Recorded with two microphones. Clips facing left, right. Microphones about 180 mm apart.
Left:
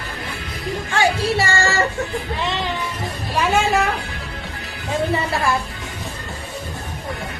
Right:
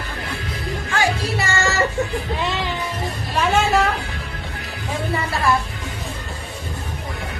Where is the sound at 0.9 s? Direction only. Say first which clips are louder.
Left 3 dB; 30° left (ahead or behind).